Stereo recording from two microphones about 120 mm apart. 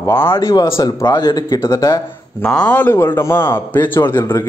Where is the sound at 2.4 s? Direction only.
5° left (ahead or behind).